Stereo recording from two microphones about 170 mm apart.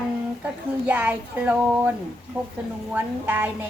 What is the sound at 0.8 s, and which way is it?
Speech, 10° right (ahead or behind).